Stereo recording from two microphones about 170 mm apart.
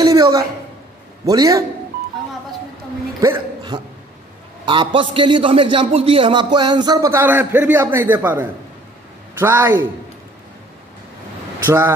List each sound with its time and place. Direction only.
0.0 s a sound: 20° right (ahead or behind)
1.2 s a man's voice: 20° right (ahead or behind)
3.2 s a man's voice: 20° right (ahead or behind)
11.6 s a man's voice: 15° right (ahead or behind)